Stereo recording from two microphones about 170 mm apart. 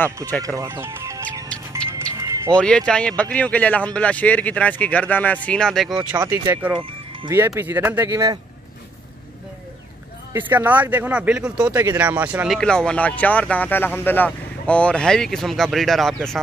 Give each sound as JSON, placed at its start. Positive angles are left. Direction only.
{"t": 0.6, "sound": "speech", "side_deg": -15}
{"t": 1.8, "sound": "music", "side_deg": 5}
{"t": 2.1, "sound": "music", "side_deg": -15}
{"t": 2.5, "sound": "speech", "side_deg": 5}
{"t": 6.0, "sound": "speech", "side_deg": -10}
{"t": 10.3, "sound": "speech", "side_deg": -10}
{"t": 12.5, "sound": "speech", "side_deg": 5}